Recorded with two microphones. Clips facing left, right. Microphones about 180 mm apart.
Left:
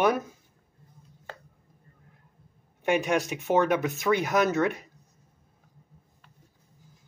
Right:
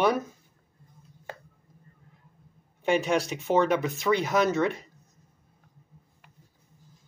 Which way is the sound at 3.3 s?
10° left (ahead or behind).